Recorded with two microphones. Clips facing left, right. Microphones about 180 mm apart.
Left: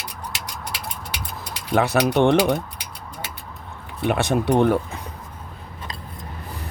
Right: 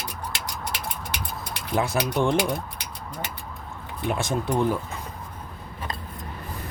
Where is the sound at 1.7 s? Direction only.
70° left (ahead or behind).